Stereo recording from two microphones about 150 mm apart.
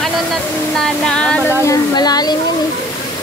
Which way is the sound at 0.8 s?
5° left (ahead or behind).